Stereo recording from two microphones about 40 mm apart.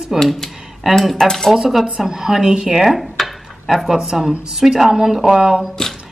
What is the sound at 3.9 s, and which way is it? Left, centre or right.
Speech, centre.